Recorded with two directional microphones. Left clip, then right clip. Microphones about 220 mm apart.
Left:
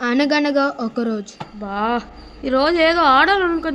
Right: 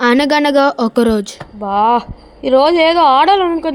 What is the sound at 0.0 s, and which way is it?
A woman's voice, 40° right (ahead or behind).